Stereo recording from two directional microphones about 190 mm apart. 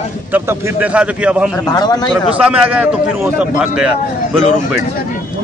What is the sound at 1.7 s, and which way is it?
Speech, 20° left (ahead or behind).